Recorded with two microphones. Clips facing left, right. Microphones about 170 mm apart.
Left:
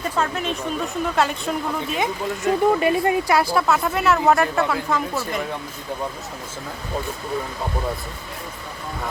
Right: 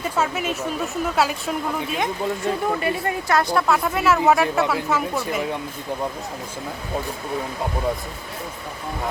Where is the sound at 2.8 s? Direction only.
20° left (ahead or behind).